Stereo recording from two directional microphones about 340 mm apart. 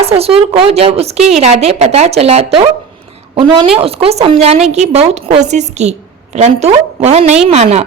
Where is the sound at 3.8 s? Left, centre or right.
Centre.